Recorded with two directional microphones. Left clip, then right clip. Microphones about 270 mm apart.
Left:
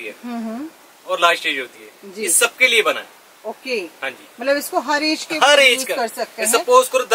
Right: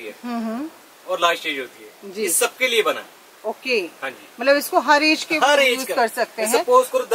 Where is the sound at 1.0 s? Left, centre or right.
Centre.